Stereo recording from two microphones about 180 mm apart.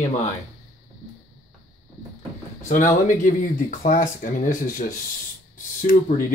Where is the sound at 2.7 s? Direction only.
45° left (ahead or behind).